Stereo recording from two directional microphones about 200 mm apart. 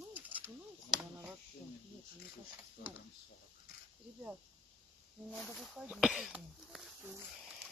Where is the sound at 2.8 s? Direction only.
50° left (ahead or behind).